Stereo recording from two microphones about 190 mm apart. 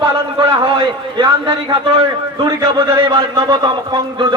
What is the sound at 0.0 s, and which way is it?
A man's voice, 25° right (ahead or behind).